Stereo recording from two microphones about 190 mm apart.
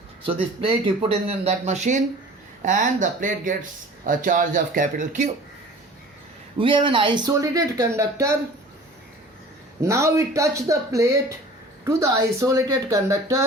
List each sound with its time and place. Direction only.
0.3 s speech: 30° right (ahead or behind)
6.6 s speech: 25° right (ahead or behind)
9.8 s speech: 15° right (ahead or behind)